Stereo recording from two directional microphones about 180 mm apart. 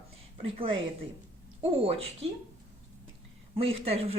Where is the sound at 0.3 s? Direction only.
30° right (ahead or behind).